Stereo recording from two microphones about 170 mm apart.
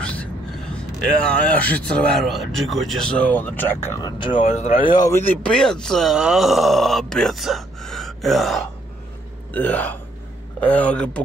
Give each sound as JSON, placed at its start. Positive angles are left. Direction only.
{"t": 0.0, "sound": "a sound", "side_deg": 5}
{"t": 1.3, "sound": "speech", "side_deg": 10}
{"t": 4.4, "sound": "speech", "side_deg": 40}
{"t": 4.7, "sound": "speech", "side_deg": 50}
{"t": 5.0, "sound": "speech", "side_deg": 15}